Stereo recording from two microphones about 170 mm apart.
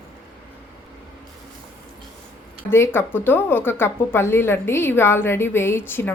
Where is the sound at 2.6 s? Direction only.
15° left (ahead or behind).